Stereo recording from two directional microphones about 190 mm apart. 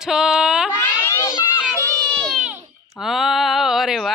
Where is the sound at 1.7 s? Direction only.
10° left (ahead or behind).